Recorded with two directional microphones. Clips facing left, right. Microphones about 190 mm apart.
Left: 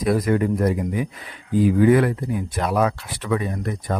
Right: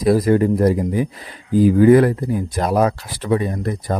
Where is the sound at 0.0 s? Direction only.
35° right (ahead or behind).